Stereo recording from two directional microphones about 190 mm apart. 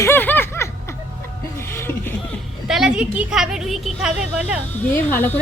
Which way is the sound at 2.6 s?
5° right (ahead or behind).